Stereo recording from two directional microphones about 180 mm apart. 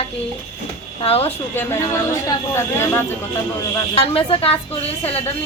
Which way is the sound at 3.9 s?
30° left (ahead or behind).